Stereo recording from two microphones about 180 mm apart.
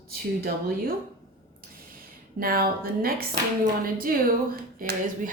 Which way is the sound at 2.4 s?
55° right (ahead or behind).